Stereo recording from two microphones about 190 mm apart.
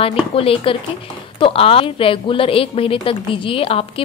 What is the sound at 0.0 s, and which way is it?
A woman's voice, 30° left (ahead or behind).